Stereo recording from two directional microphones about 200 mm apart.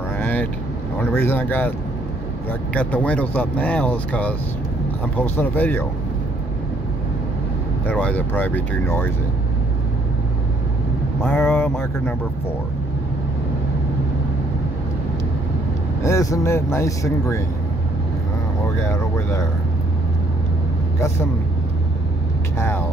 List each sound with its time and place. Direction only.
0.2 s vehicle: 10° left (ahead or behind)
1.1 s speech: 10° left (ahead or behind)
2.7 s speech: 5° left (ahead or behind)
7.8 s speech: 10° left (ahead or behind)
11.2 s speech: 10° left (ahead or behind)
16.0 s speech: 15° left (ahead or behind)
18.8 s speech: 15° left (ahead or behind)
22.6 s speech: 10° left (ahead or behind)